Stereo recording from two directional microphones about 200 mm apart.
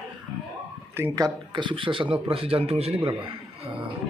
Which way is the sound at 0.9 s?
15° right (ahead or behind).